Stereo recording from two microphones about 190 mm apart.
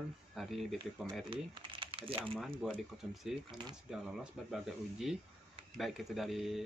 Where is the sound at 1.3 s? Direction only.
25° right (ahead or behind).